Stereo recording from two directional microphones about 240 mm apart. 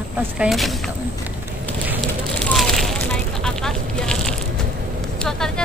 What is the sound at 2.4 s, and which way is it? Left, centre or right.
Fire, centre.